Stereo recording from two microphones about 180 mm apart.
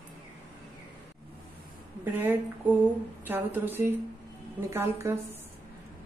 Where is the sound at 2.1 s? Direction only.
10° right (ahead or behind).